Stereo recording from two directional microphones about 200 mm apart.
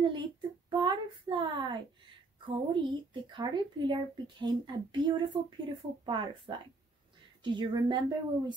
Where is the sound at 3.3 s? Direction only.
20° right (ahead or behind).